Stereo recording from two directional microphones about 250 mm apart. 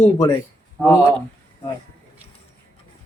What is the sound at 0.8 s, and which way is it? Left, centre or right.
Speech, centre.